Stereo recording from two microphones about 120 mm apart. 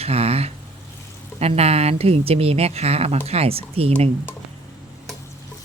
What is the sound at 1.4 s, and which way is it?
Speech, 60° right (ahead or behind).